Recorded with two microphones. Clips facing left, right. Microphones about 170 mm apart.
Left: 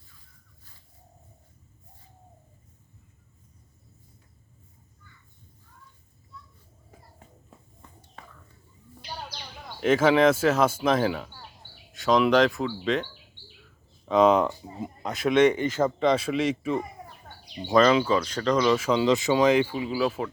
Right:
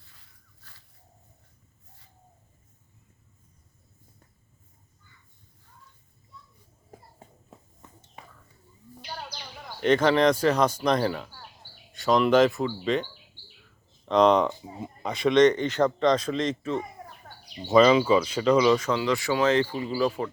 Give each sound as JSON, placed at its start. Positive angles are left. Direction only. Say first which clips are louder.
{"t": 0.0, "sound": "a sound", "louder": "left 1 dB", "side_deg": -75}
{"t": 8.2, "sound": "whispering", "louder": "even", "side_deg": -15}
{"t": 9.0, "sound": "a man's voice", "louder": "even", "side_deg": 0}
{"t": 17.2, "sound": "speech", "louder": "left 1 dB", "side_deg": 0}
{"t": 18.9, "sound": "a man's voice", "louder": "left 3 dB", "side_deg": 20}